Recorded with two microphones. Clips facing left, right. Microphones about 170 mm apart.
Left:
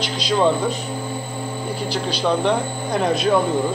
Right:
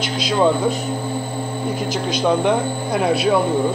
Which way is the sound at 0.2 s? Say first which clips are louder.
Right 1 dB; 5° right (ahead or behind).